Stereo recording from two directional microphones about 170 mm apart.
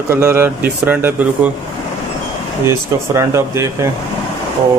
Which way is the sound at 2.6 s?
15° right (ahead or behind).